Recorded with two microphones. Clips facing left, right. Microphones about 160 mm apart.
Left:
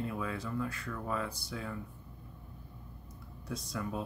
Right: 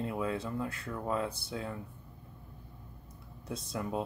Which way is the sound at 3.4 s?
25° right (ahead or behind).